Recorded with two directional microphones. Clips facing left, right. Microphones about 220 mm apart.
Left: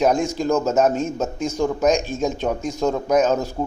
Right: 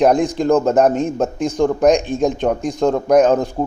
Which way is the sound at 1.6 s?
60° right (ahead or behind).